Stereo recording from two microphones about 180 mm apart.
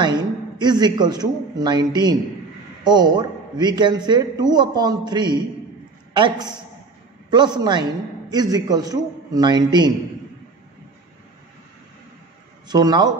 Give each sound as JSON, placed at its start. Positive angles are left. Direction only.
{"t": 0.0, "sound": "a man's voice", "side_deg": -25}
{"t": 12.6, "sound": "a man's voice", "side_deg": -20}